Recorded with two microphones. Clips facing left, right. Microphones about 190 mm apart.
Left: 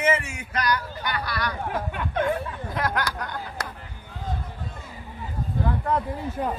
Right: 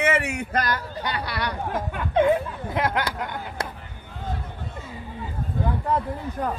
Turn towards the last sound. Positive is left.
turn(degrees=5)  # may be behind; listen again after turning